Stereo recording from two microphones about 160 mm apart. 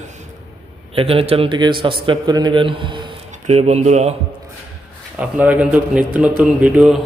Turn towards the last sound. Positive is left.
turn(degrees=-5)  # may be behind; listen again after turning